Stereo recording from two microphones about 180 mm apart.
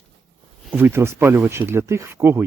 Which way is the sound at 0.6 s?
10° right (ahead or behind).